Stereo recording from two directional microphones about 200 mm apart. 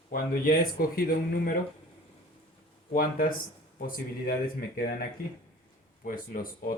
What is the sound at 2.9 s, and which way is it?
Speech, 45° left (ahead or behind).